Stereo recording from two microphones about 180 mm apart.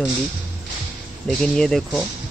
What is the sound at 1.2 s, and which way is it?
Speech, 5° left (ahead or behind).